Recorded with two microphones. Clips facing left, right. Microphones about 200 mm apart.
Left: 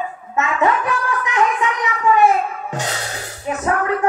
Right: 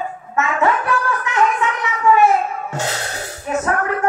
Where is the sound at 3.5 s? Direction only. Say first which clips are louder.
Even; 15° left (ahead or behind).